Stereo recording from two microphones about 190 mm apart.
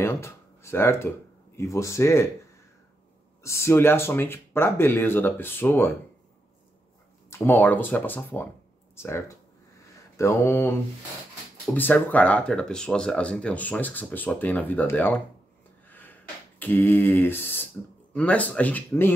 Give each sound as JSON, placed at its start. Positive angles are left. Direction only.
{"t": 0.0, "sound": "speech", "side_deg": 15}
{"t": 3.4, "sound": "speech", "side_deg": 15}
{"t": 7.2, "sound": "speech", "side_deg": 15}
{"t": 15.9, "sound": "a sound", "side_deg": 10}
{"t": 18.1, "sound": "speech", "side_deg": 5}